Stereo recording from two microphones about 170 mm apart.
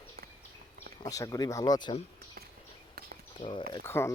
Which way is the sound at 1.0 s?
20° left (ahead or behind).